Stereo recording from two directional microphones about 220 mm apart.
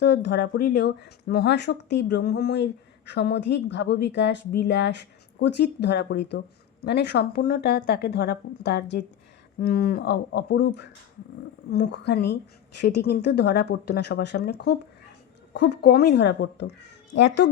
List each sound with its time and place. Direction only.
0.0 s speech: 50° left (ahead or behind)